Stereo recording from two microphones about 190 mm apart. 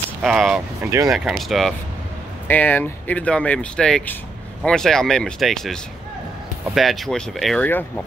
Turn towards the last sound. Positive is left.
turn(degrees=5)  # may be behind; listen again after turning